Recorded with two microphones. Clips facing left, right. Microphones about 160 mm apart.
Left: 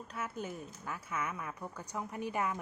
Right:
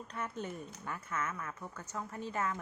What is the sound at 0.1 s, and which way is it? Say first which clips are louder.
A woman's voice: even; 5° left (ahead or behind).